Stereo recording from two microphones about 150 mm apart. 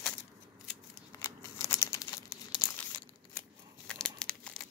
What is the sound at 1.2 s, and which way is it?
Scissors, 20° left (ahead or behind).